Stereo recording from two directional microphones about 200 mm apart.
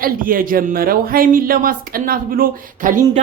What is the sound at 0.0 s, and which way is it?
Speech, 45° right (ahead or behind).